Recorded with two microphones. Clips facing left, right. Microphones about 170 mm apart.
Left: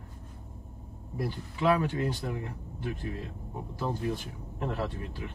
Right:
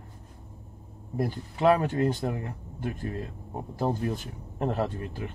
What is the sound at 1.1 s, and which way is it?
A man's voice, 50° right (ahead or behind).